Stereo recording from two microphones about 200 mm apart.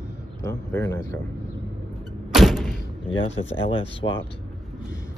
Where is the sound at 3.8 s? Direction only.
65° left (ahead or behind).